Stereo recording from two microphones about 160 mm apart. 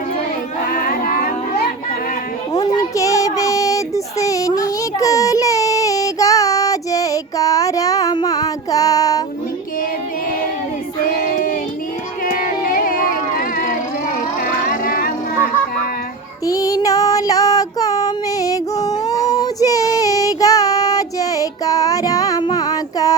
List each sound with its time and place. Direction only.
0.6 s child singing: 60° left (ahead or behind)
2.5 s child singing: 25° left (ahead or behind)
11.0 s a sound: 60° left (ahead or behind)
16.5 s female singing: 20° left (ahead or behind)